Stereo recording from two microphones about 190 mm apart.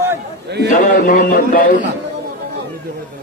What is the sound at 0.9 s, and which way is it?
Speech, 45° left (ahead or behind).